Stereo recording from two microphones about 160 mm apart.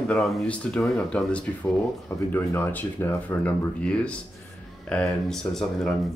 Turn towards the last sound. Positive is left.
turn(degrees=0)  # may be behind; listen again after turning